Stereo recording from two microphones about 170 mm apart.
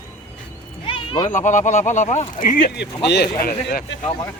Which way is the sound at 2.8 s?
80° left.